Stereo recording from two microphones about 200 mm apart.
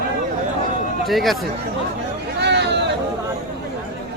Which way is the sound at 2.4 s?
60° right (ahead or behind).